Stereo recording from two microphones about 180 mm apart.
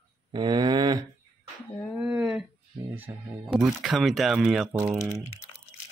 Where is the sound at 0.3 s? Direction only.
25° right (ahead or behind).